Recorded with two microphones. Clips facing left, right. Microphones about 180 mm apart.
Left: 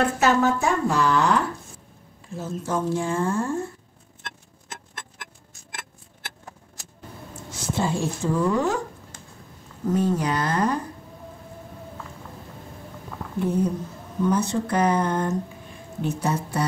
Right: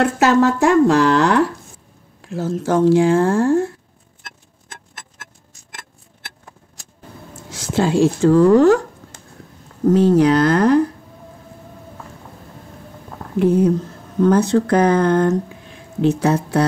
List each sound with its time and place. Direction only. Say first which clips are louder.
0.0 s speech: right 6 dB; 90° right
7.5 s speech: right 9 dB; 90° right
9.8 s speech: right 10 dB; 85° right
13.4 s speech: right 9 dB; 90° right